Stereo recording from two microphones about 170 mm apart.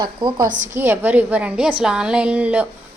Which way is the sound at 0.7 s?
15° right (ahead or behind).